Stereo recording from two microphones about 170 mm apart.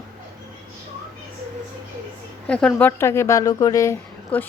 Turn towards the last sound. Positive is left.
turn(degrees=10)  # may be behind; listen again after turning